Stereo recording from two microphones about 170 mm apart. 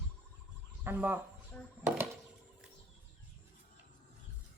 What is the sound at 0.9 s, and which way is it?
Speech, 10° right (ahead or behind).